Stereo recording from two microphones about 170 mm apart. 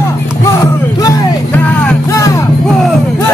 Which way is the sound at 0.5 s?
20° left (ahead or behind).